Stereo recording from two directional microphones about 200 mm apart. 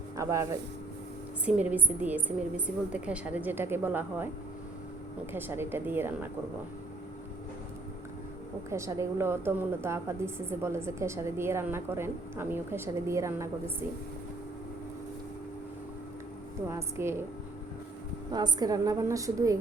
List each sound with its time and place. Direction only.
0.2 s a woman's voice: 15° right (ahead or behind)
5.3 s a woman's voice: 10° right (ahead or behind)
8.7 s a woman's voice: 15° right (ahead or behind)
16.6 s a woman's voice: 15° right (ahead or behind)
18.3 s a woman's voice: 20° right (ahead or behind)